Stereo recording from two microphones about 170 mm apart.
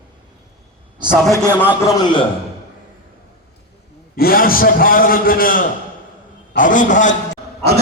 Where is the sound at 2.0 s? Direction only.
25° left (ahead or behind).